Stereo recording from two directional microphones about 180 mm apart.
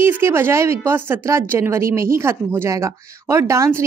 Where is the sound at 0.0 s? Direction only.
15° right (ahead or behind).